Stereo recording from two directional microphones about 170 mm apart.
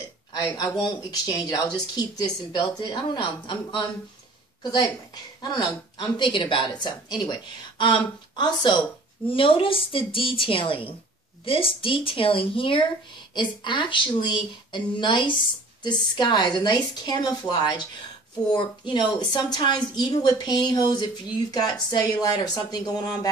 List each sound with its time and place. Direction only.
0.4 s a woman's voice: 25° left (ahead or behind)